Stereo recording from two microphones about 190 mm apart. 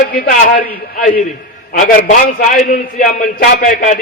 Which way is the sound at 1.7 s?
45° left (ahead or behind).